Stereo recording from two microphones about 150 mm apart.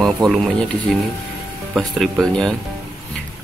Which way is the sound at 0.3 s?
Centre (ahead or behind).